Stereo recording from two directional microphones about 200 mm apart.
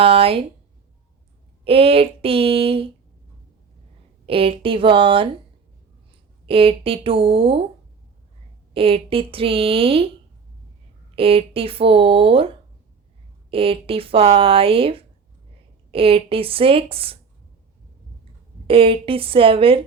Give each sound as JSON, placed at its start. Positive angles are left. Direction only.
{"t": 0.0, "sound": "speech", "side_deg": -30}
{"t": 1.6, "sound": "speech", "side_deg": -30}
{"t": 4.3, "sound": "speech", "side_deg": -30}
{"t": 6.4, "sound": "speech", "side_deg": -25}
{"t": 8.7, "sound": "speech", "side_deg": -30}
{"t": 11.1, "sound": "speech", "side_deg": -25}
{"t": 13.5, "sound": "speech", "side_deg": -30}
{"t": 18.7, "sound": "speech", "side_deg": -25}